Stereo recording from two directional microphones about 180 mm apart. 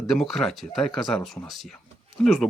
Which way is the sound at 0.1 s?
Centre (ahead or behind).